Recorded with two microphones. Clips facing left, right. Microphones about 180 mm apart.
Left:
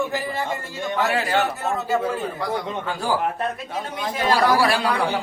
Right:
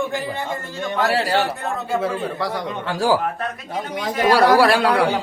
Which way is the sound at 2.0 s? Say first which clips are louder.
Right 2 dB; 80° right.